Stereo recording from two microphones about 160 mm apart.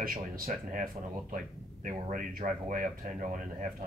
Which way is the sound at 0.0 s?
65° right (ahead or behind).